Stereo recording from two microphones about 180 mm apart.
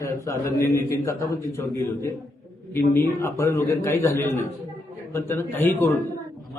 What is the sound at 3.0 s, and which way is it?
A man's voice, 15° left (ahead or behind).